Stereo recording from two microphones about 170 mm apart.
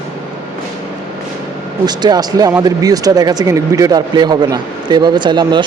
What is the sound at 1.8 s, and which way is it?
Speech, 25° right (ahead or behind).